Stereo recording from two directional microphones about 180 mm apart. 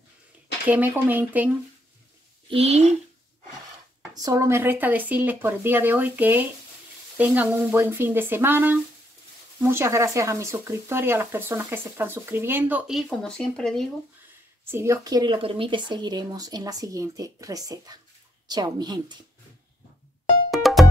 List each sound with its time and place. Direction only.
0.7 s speech: 10° right (ahead or behind)
2.5 s a woman's voice: 35° right (ahead or behind)
4.1 s speech: 20° right (ahead or behind); by 13.8 s 5° left (ahead or behind)
14.6 s speech: 15° right (ahead or behind)
20.5 s music: centre (ahead or behind)